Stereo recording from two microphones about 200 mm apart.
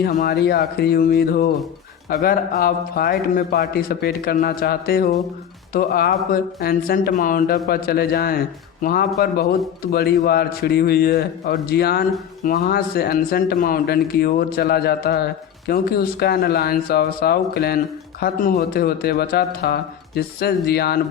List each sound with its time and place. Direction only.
0.0 s speech: 45° left (ahead or behind)